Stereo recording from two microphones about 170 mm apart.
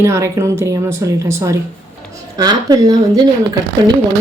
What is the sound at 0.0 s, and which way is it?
Speech, 15° right (ahead or behind).